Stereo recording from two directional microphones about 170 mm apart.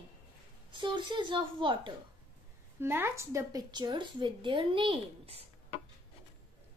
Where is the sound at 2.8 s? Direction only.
15° right (ahead or behind); by 5.4 s 35° right (ahead or behind).